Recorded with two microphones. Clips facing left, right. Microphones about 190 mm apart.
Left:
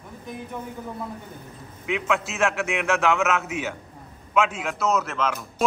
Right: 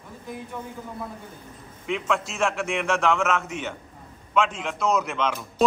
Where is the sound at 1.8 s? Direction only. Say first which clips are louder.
Left 1 dB; 5° left (ahead or behind).